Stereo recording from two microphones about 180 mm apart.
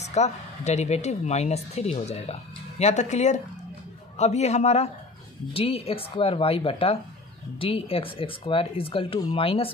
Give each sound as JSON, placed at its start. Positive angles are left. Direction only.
{"t": 0.0, "sound": "speech", "side_deg": 40}